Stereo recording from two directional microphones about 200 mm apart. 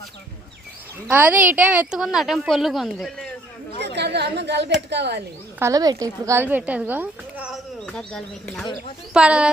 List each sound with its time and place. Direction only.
1.0 s a woman's voice: 10° right (ahead or behind)
3.8 s a sound: 55° right (ahead or behind)
4.9 s speech: 60° right (ahead or behind)
5.5 s a woman's voice: 15° right (ahead or behind)